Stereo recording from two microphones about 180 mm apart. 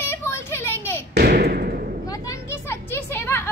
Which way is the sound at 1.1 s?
60° right (ahead or behind).